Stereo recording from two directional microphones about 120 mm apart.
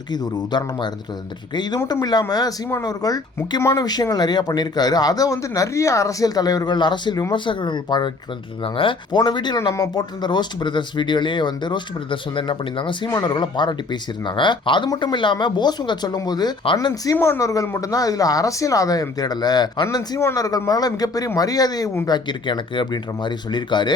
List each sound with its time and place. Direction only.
0.1 s speech: 40° left (ahead or behind)
1.9 s speech: 35° left (ahead or behind)